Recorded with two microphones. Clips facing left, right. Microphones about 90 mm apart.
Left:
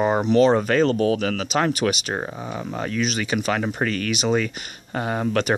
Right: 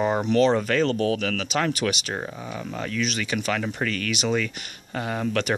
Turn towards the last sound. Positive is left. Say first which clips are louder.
# left 3 dB
turn(degrees=30)  # may be behind; listen again after turning